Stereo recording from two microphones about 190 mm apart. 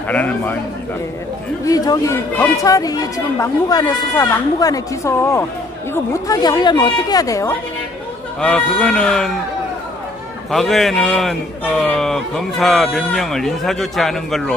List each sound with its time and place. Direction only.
0.1 s speech: 10° left (ahead or behind)
1.7 s speech: 15° left (ahead or behind)
8.4 s a man's voice: 5° left (ahead or behind)
10.5 s a man's voice: centre (ahead or behind)